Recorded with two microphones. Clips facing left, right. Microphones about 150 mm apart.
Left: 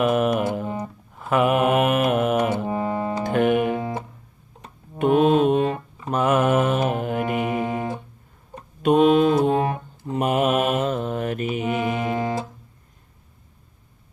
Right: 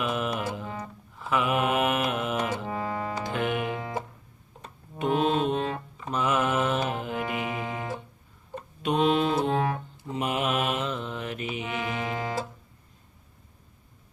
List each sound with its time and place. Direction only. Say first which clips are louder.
0.0 s music: left 9 dB; 55° left (ahead or behind)
2.6 s music: left 6 dB; 25° left (ahead or behind)
3.2 s music: left 11 dB; 50° left (ahead or behind)
3.8 s music: left 5 dB; 25° left (ahead or behind)
4.9 s mantra: left 8 dB; 55° left (ahead or behind)
8.8 s mantra: left 8 dB; 50° left (ahead or behind)
9.5 s music: left 5 dB; 15° left (ahead or behind)
10.1 s mantra: left 7 dB; 50° left (ahead or behind)